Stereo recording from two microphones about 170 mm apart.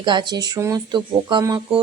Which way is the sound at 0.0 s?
25° right (ahead or behind).